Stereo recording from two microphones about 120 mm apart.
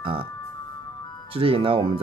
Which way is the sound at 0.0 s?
45° right (ahead or behind).